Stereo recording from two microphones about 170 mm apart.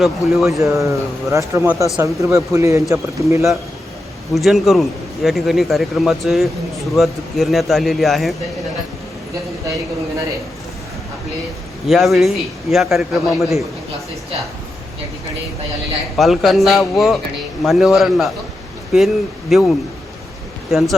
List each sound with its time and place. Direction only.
0.0 s a man's voice: centre (ahead or behind)
0.6 s speech: 15° right (ahead or behind)
4.4 s a man's voice: centre (ahead or behind)
11.9 s a man's voice: centre (ahead or behind)
16.1 s a man's voice: centre (ahead or behind)